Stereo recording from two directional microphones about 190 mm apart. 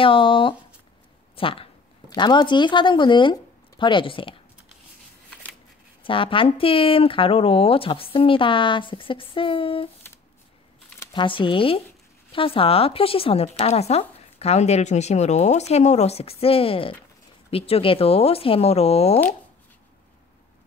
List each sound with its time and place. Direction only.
0.0 s speech: 25° left (ahead or behind)
6.0 s speech: 25° left (ahead or behind)
11.0 s speech: 25° left (ahead or behind)